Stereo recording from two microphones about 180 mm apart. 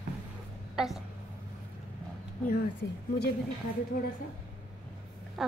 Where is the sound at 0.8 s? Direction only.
Centre (ahead or behind).